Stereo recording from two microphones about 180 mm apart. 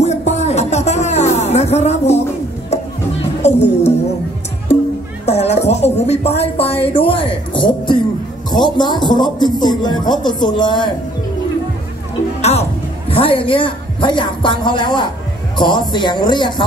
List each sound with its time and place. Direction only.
0.0 s music: 40° left (ahead or behind)
3.4 s music: 35° left (ahead or behind)
5.2 s a woman's voice: 35° left (ahead or behind)
12.4 s a woman's voice: 35° left (ahead or behind)